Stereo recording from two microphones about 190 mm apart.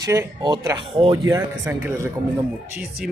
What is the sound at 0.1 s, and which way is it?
Speech, 20° right (ahead or behind).